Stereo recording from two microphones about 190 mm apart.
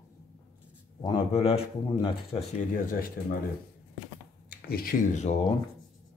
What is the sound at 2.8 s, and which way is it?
Speech, 45° left (ahead or behind).